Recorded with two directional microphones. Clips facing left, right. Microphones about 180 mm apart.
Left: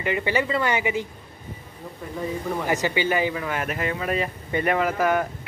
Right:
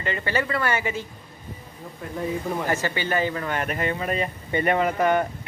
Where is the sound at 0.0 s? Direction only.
15° left (ahead or behind).